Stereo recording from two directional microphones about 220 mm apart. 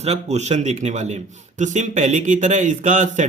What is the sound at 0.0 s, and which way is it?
A man's voice, 30° right (ahead or behind).